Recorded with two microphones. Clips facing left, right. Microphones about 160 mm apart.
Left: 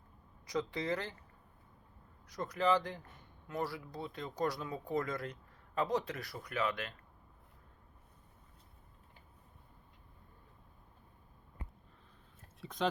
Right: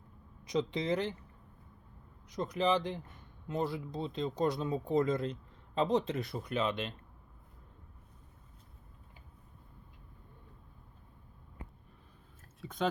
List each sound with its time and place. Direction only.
0.4 s speech: 20° right (ahead or behind)
2.2 s speech: 20° right (ahead or behind)
12.6 s speech: centre (ahead or behind)